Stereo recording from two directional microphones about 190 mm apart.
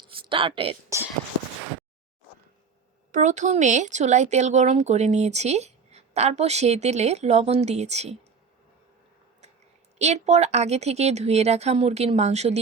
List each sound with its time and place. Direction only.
0.0 s a sound: 25° right (ahead or behind)
3.1 s speech: 40° right (ahead or behind)
10.0 s speech: 35° right (ahead or behind)